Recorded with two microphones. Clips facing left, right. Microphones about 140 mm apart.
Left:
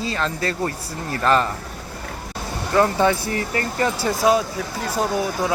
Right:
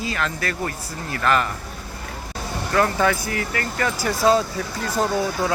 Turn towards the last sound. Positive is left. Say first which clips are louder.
# even
turn(degrees=15)  # may be behind; listen again after turning